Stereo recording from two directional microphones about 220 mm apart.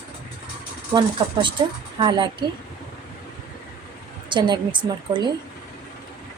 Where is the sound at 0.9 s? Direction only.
20° right (ahead or behind).